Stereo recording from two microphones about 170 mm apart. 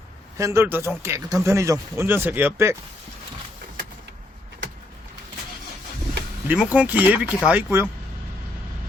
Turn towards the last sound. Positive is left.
turn(degrees=-10)  # may be behind; listen again after turning